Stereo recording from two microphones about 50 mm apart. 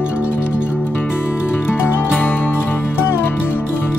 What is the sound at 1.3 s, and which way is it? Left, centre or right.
Music, left.